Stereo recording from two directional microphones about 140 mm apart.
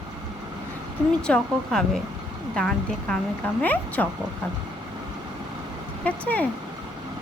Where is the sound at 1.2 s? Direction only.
5° left (ahead or behind).